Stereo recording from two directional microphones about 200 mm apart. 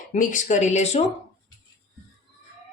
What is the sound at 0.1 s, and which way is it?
Speech, 40° left (ahead or behind).